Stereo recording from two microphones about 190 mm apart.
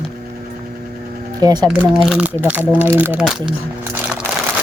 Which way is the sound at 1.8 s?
5° right (ahead or behind).